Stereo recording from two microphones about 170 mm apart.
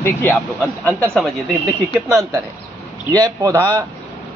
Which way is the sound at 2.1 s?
20° right (ahead or behind).